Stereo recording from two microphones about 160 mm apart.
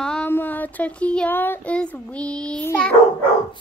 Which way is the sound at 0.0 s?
10° left (ahead or behind).